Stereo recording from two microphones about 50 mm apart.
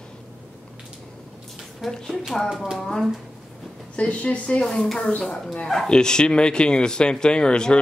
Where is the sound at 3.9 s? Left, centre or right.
Left.